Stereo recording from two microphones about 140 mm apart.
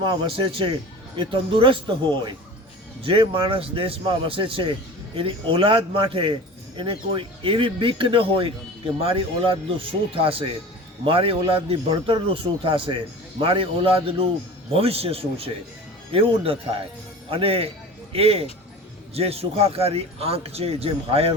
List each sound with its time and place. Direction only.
0.0 s speech: 35° right (ahead or behind)
3.0 s a man's voice: 40° right (ahead or behind)